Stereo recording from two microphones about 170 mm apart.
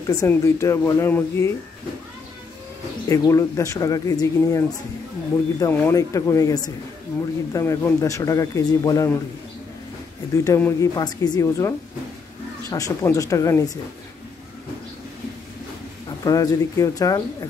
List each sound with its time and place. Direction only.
0.0 s speech: 20° left (ahead or behind)
3.1 s speech: 15° left (ahead or behind)
10.3 s speech: 20° left (ahead or behind)
16.3 s speech: 20° left (ahead or behind)